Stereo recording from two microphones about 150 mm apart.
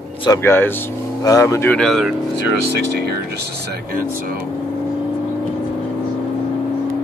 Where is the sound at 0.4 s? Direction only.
15° left (ahead or behind).